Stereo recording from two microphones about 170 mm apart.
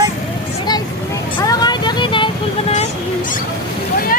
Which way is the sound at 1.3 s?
25° left (ahead or behind).